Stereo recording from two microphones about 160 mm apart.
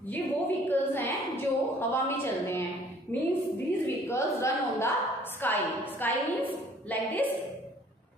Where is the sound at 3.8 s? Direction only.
20° left (ahead or behind).